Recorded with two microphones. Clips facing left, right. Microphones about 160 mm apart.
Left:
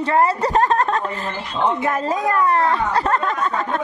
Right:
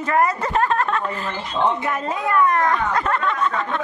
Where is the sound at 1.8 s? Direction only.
45° left (ahead or behind).